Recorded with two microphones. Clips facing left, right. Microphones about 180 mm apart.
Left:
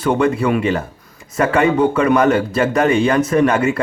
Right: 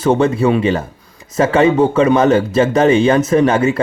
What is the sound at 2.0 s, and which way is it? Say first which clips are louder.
A man's voice: right 4 dB; 25° right (ahead or behind).